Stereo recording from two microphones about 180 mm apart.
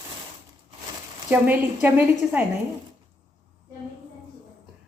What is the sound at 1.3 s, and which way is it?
A woman's voice, 10° right (ahead or behind).